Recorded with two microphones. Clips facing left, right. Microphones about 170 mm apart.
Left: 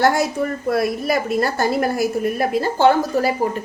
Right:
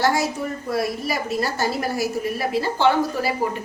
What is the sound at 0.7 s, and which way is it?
A woman's voice, 55° left (ahead or behind).